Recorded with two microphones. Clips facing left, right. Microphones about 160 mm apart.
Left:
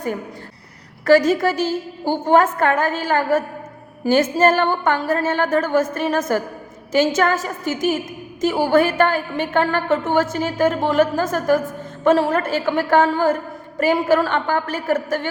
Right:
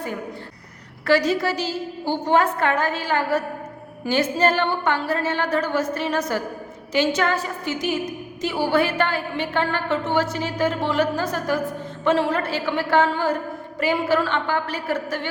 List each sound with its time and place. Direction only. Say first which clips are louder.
1.0 s a woman's voice: left 5 dB; 45° left (ahead or behind)